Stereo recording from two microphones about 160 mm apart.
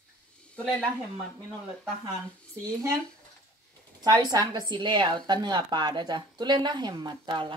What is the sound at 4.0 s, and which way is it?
A woman's voice, 25° right (ahead or behind).